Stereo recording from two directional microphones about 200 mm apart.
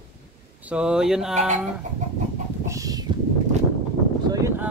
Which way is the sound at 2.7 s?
15° right (ahead or behind).